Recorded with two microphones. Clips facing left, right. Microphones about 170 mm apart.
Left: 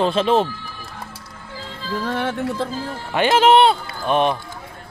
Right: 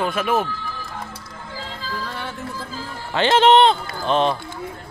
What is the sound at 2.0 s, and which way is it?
Music, 55° left (ahead or behind).